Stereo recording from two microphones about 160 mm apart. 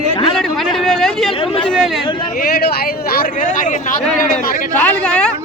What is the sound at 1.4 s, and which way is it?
Speech, 35° left (ahead or behind).